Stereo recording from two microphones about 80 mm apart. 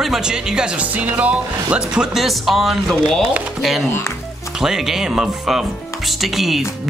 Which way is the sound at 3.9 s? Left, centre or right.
Left.